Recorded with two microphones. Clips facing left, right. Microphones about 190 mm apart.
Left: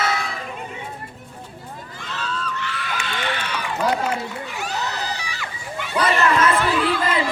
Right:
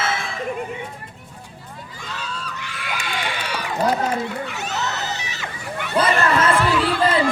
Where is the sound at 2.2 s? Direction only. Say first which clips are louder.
Left 5 dB; 10° right (ahead or behind).